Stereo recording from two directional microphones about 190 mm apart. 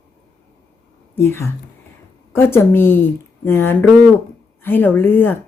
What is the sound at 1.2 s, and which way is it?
Speech, 10° left (ahead or behind).